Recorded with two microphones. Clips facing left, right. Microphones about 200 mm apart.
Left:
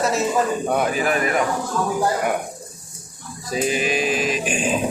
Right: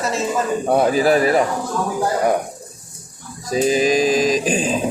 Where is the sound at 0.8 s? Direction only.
35° right (ahead or behind).